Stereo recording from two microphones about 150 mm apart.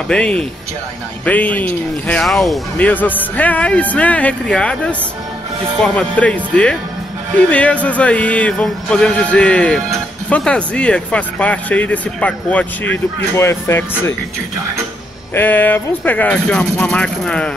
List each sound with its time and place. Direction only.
0.1 s speech: 5° left (ahead or behind)
2.9 s speech: 10° left (ahead or behind)
15.3 s speech: 10° left (ahead or behind)